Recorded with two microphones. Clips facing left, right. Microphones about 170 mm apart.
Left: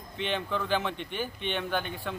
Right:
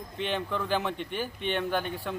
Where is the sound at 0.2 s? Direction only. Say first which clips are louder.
Even; 5° right (ahead or behind).